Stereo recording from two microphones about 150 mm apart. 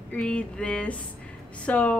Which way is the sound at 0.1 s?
10° left (ahead or behind).